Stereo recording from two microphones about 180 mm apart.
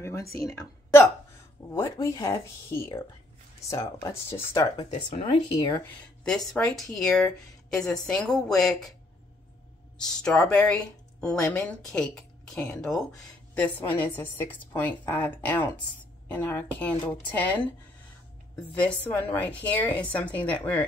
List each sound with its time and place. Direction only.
0.0 s a sound: 15° left (ahead or behind)
0.4 s a woman's voice: 20° left (ahead or behind)
4.9 s speech: 35° left (ahead or behind)
6.2 s speech: 5° left (ahead or behind)
9.9 s speech: 5° left (ahead or behind)
16.9 s speech: 20° left (ahead or behind)
17.3 s speech: 10° left (ahead or behind)
18.8 s speech: 10° left (ahead or behind)